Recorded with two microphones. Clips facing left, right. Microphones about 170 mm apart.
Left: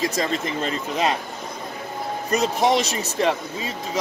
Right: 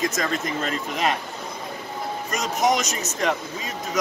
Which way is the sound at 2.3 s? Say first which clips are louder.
Left 3 dB; 30° left (ahead or behind).